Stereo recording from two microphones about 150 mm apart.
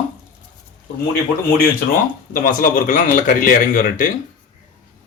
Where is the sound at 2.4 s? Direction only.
70° left (ahead or behind).